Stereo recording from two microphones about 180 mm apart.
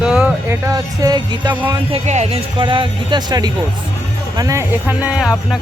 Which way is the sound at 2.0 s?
40° right (ahead or behind).